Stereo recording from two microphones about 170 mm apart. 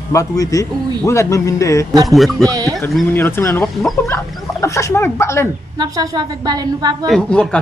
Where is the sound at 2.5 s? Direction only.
20° right (ahead or behind).